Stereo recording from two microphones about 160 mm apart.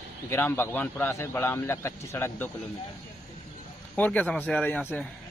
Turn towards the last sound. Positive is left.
turn(degrees=10)  # may be behind; listen again after turning